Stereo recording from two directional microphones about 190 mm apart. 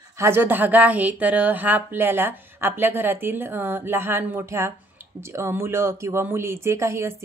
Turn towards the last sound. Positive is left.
turn(degrees=-15)  # may be behind; listen again after turning